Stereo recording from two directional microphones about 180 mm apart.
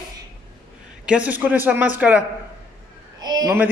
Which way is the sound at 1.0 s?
5° right (ahead or behind).